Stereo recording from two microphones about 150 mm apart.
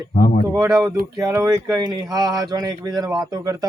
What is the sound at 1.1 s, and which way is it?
Speech, 20° right (ahead or behind).